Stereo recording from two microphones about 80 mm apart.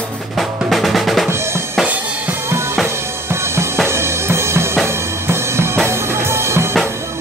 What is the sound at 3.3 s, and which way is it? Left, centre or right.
Drum kit, right.